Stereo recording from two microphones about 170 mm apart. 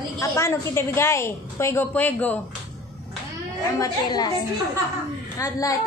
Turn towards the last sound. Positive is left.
turn(degrees=20)  # may be behind; listen again after turning